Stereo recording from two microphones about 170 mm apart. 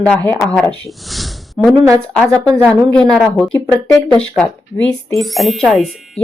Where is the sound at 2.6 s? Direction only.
5° left (ahead or behind).